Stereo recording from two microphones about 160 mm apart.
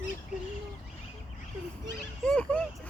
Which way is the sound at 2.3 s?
5° left (ahead or behind).